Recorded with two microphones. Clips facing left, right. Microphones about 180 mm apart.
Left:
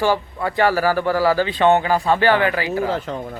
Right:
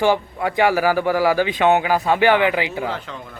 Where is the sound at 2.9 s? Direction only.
40° left (ahead or behind).